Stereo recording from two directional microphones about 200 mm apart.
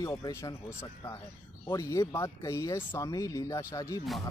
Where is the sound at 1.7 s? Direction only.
15° left (ahead or behind).